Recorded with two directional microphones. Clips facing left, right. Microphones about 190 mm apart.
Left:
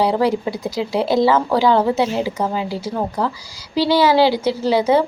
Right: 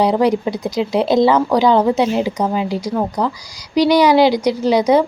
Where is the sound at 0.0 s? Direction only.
20° right (ahead or behind).